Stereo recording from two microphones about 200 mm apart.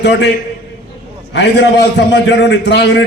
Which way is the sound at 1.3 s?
60° left (ahead or behind).